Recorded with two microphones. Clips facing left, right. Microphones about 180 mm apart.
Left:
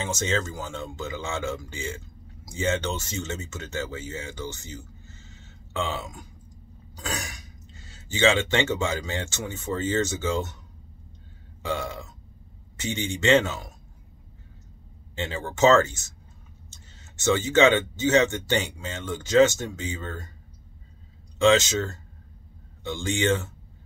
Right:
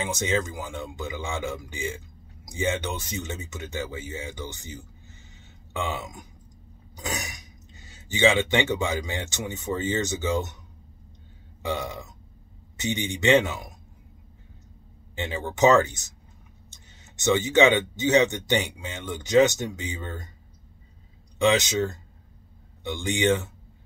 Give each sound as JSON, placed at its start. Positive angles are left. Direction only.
{"t": 0.0, "sound": "a man's voice", "side_deg": -15}
{"t": 11.6, "sound": "speech", "side_deg": -15}
{"t": 15.1, "sound": "speech", "side_deg": -15}
{"t": 21.4, "sound": "speech", "side_deg": -15}